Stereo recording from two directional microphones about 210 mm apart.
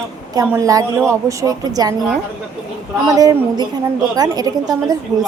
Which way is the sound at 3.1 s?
15° right (ahead or behind).